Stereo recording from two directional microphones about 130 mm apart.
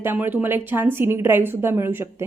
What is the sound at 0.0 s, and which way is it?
A woman's voice, 15° right (ahead or behind).